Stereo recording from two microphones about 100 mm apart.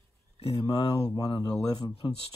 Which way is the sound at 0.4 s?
80° left.